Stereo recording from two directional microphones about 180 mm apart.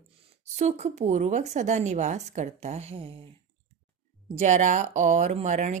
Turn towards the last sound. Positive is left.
turn(degrees=-40)  # may be behind; listen again after turning